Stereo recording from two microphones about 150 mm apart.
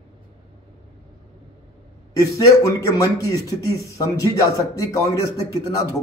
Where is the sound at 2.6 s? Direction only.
20° left (ahead or behind).